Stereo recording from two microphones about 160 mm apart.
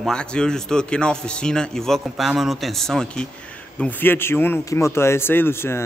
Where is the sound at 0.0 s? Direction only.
5° left (ahead or behind).